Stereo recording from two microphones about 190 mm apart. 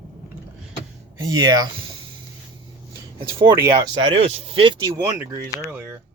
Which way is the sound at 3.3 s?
15° right (ahead or behind).